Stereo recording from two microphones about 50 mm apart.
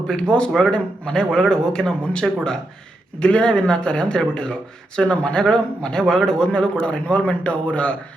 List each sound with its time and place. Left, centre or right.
0.1 s speech: centre